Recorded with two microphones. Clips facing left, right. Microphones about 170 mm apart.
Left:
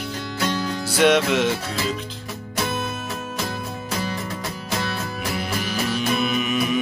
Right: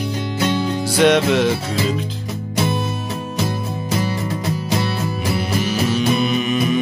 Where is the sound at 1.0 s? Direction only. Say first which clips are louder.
Right 3 dB; 5° left (ahead or behind).